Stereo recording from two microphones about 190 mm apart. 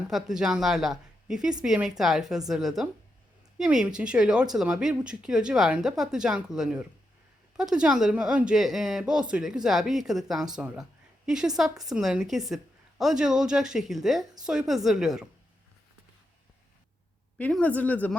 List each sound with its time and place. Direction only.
0.1 s speech: centre (ahead or behind)
17.3 s speech: 10° left (ahead or behind)